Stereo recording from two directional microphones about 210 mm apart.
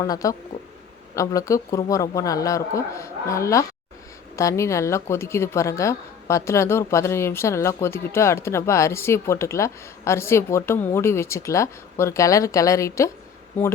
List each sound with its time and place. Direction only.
0.0 s a woman's voice: 15° left (ahead or behind)